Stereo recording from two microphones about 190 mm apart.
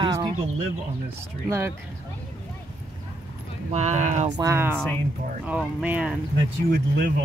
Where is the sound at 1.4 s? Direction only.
15° right (ahead or behind).